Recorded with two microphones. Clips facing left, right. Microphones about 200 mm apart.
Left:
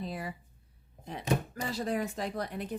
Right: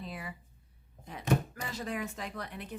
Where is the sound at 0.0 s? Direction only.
35° left (ahead or behind).